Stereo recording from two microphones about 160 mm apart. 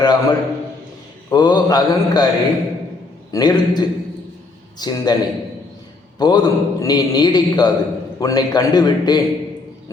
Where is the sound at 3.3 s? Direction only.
25° left (ahead or behind).